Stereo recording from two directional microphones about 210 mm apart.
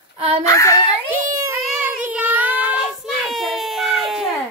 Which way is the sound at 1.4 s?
10° right (ahead or behind).